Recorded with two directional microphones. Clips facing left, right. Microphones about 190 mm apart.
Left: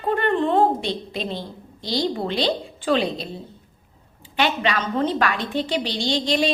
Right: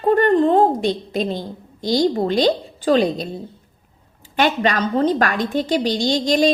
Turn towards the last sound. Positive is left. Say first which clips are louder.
# right 5 dB
turn(degrees=-40)  # may be behind; listen again after turning